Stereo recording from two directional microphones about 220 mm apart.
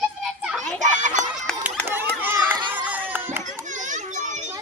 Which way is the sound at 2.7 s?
5° right (ahead or behind).